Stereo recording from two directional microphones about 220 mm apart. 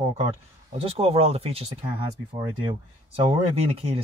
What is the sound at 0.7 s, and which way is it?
Speech, 25° right (ahead or behind).